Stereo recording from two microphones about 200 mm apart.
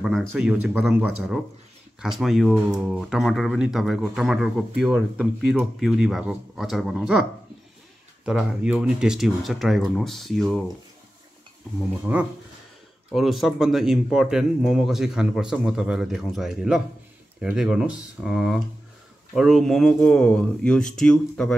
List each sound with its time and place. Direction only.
0.0 s speech: centre (ahead or behind)
8.3 s speech: 5° right (ahead or behind)
12.1 s speech: 10° right (ahead or behind)